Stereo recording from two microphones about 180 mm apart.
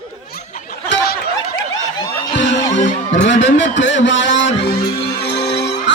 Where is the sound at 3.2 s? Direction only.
85° left.